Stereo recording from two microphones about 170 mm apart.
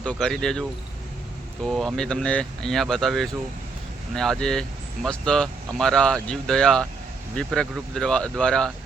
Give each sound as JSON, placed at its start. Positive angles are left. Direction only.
{"t": 0.0, "sound": "speech", "side_deg": 5}
{"t": 1.6, "sound": "speech", "side_deg": 0}